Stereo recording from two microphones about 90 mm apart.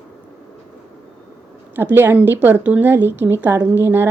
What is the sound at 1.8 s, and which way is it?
Speech, 25° right (ahead or behind).